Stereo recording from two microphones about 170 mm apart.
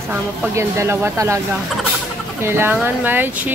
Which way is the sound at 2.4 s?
15° right (ahead or behind).